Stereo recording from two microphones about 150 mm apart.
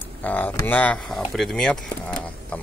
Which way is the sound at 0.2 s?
10° left (ahead or behind).